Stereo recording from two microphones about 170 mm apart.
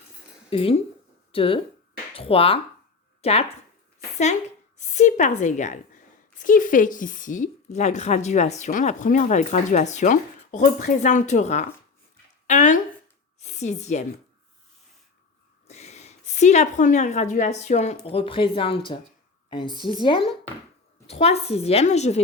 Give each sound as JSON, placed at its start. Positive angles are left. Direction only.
{"t": 0.5, "sound": "a woman's voice", "side_deg": 35}
{"t": 4.8, "sound": "a woman's voice", "side_deg": 45}
{"t": 15.6, "sound": "a woman's voice", "side_deg": 40}